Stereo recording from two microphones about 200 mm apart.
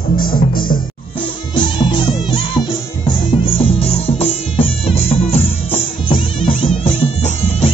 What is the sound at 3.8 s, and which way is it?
Music, 30° left (ahead or behind).